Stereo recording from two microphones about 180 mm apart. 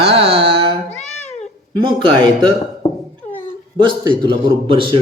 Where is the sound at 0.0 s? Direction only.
35° right (ahead or behind).